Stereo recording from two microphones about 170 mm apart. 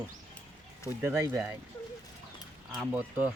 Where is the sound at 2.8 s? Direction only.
10° right (ahead or behind).